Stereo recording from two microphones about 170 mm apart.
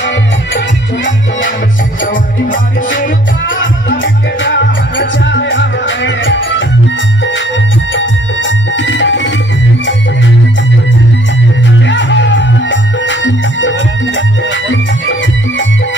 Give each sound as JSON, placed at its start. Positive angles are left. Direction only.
{"t": 4.0, "sound": "music", "side_deg": 90}
{"t": 7.9, "sound": "music", "side_deg": 90}
{"t": 11.9, "sound": "music", "side_deg": 90}